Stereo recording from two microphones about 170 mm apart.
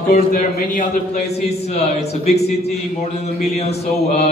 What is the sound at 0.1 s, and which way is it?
Speech, 50° left (ahead or behind).